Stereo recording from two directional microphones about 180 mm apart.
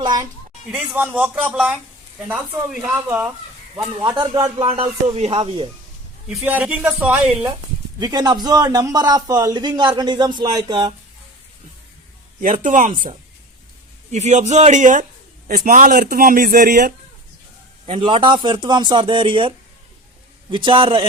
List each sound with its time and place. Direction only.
0.0 s a man's voice: 25° right (ahead or behind)
0.7 s a man's voice: 10° right (ahead or behind)
4.0 s a man's voice: 25° right (ahead or behind)
4.5 s music: 30° right (ahead or behind)
6.2 s a man's voice: 10° right (ahead or behind)
7.9 s a man's voice: 25° right (ahead or behind)
12.4 s speech: 45° right (ahead or behind)
14.1 s music: 40° right (ahead or behind)
15.4 s a man's voice: 50° right (ahead or behind)
17.8 s a man's voice: 35° right (ahead or behind)
20.7 s a man's voice: 30° right (ahead or behind)